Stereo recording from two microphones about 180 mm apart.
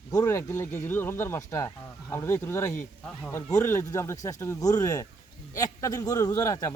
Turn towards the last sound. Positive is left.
turn(degrees=20)  # may be behind; listen again after turning